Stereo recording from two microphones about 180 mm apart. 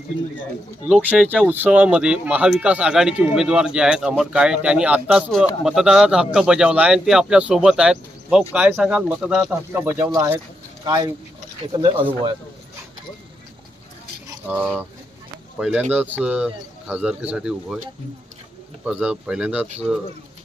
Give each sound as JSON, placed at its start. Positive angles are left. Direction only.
{"t": 0.9, "sound": "speech", "side_deg": -5}
{"t": 14.4, "sound": "speech", "side_deg": -10}
{"t": 18.9, "sound": "speech", "side_deg": -5}